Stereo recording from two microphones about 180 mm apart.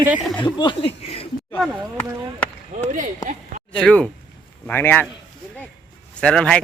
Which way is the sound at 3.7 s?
5° left (ahead or behind).